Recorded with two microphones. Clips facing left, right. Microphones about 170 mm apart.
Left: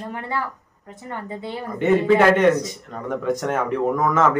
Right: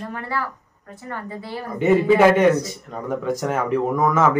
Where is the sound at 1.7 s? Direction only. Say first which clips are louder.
Right 1 dB; 5° right (ahead or behind).